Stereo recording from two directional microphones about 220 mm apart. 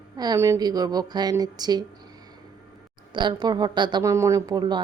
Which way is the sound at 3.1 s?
20° right (ahead or behind).